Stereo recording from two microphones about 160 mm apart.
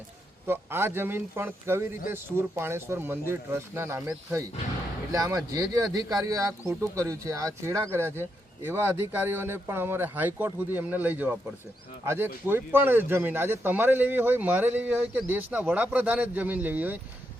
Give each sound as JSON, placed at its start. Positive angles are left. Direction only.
{"t": 0.4, "sound": "speech", "side_deg": -15}
{"t": 5.1, "sound": "speech", "side_deg": -20}